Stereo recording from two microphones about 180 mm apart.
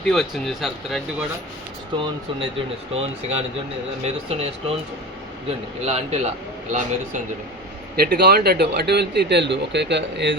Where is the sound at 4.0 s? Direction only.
35° right (ahead or behind).